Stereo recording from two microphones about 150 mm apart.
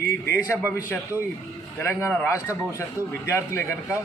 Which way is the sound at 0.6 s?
10° right (ahead or behind).